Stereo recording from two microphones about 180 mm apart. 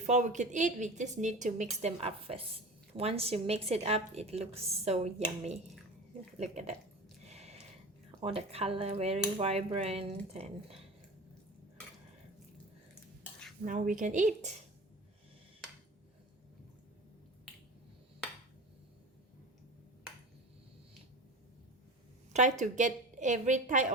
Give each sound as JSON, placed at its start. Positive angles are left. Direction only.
{"t": 0.0, "sound": "a woman's voice", "side_deg": -40}
{"t": 6.4, "sound": "a woman's voice", "side_deg": -40}
{"t": 7.3, "sound": "a sound", "side_deg": -35}
{"t": 8.2, "sound": "a woman's voice", "side_deg": -35}
{"t": 13.7, "sound": "speech", "side_deg": -50}
{"t": 22.3, "sound": "a woman's voice", "side_deg": -40}